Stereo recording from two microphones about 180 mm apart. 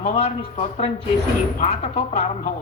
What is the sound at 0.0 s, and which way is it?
A woman's voice, 35° left (ahead or behind).